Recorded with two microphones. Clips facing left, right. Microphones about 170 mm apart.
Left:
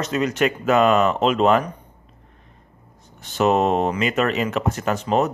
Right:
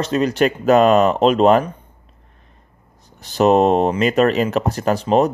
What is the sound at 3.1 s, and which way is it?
Speech, 35° right (ahead or behind).